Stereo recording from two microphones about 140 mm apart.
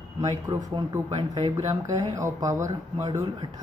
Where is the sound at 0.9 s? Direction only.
30° right (ahead or behind).